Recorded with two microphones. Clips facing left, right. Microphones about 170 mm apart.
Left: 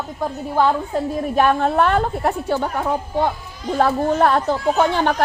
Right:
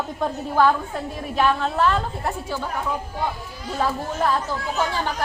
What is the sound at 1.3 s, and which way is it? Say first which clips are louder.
A woman's voice: left 4 dB; 50° left (ahead or behind).